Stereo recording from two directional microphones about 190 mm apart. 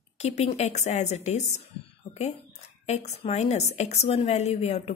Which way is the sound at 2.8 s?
35° left (ahead or behind).